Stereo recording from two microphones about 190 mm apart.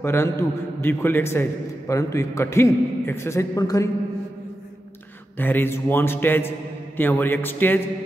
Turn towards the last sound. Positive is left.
turn(degrees=10)  # may be behind; listen again after turning